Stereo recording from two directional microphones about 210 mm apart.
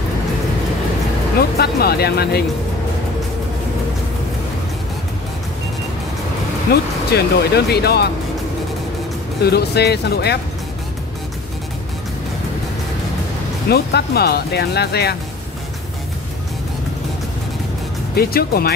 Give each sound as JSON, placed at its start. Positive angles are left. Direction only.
{"t": 1.6, "sound": "speech", "side_deg": 50}
{"t": 6.7, "sound": "speech", "side_deg": 50}
{"t": 9.4, "sound": "speech", "side_deg": 50}
{"t": 13.7, "sound": "speech", "side_deg": 50}
{"t": 18.1, "sound": "speech", "side_deg": 45}